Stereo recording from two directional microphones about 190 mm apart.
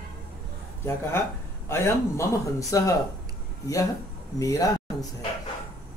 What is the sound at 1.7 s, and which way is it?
Speech, 15° left (ahead or behind).